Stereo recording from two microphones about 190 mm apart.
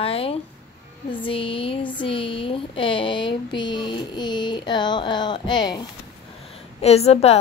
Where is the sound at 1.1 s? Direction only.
25° left (ahead or behind).